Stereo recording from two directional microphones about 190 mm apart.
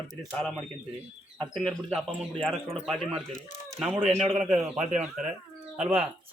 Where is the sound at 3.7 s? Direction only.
Centre (ahead or behind).